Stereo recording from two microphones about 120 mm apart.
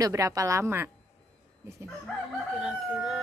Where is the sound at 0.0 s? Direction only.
30° right (ahead or behind).